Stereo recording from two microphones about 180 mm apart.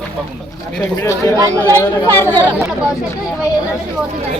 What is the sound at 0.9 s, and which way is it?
Speech, 15° left (ahead or behind).